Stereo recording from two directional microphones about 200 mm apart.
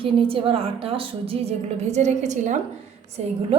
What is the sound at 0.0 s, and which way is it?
A woman's voice, 25° right (ahead or behind).